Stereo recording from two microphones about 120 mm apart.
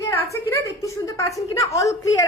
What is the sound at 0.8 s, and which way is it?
A woman's voice, 25° left (ahead or behind).